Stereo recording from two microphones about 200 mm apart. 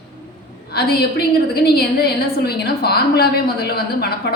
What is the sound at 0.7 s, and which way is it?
A woman's voice, 50° left (ahead or behind).